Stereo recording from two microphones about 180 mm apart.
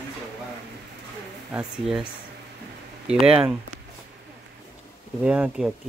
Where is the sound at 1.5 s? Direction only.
5° right (ahead or behind).